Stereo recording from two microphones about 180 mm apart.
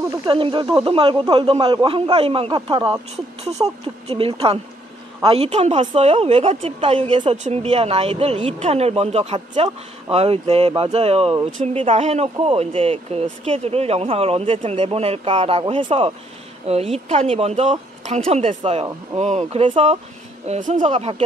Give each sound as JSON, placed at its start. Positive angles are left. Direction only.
{"t": 0.2, "sound": "speech", "side_deg": -25}
{"t": 20.4, "sound": "speech", "side_deg": -45}